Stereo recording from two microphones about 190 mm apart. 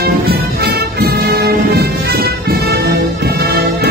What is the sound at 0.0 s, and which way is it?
Music, 55° right (ahead or behind).